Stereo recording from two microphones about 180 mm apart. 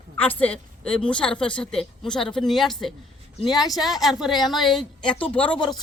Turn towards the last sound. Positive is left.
turn(degrees=5)  # may be behind; listen again after turning